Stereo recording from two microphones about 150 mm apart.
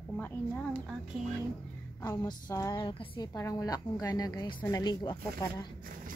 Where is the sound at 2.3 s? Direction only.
25° left (ahead or behind).